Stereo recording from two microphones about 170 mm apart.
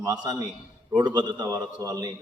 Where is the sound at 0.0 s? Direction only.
25° right (ahead or behind).